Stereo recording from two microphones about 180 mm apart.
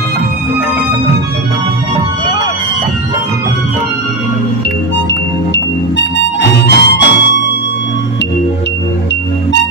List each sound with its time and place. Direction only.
5.5 s harmonica: 80° left